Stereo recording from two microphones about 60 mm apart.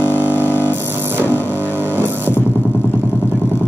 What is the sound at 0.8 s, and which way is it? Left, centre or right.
Music, right.